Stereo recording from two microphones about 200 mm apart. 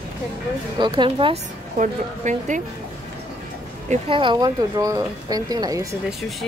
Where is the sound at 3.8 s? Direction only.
25° right (ahead or behind).